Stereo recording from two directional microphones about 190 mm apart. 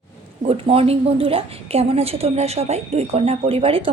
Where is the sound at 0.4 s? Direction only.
30° right (ahead or behind).